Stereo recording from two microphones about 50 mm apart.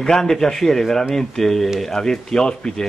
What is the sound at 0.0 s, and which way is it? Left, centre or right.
Speech, centre.